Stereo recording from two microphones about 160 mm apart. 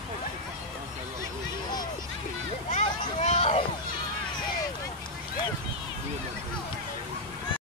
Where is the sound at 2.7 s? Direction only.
45° left (ahead or behind).